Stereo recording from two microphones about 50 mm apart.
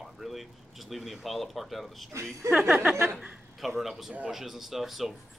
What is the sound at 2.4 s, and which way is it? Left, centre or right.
Speech, right.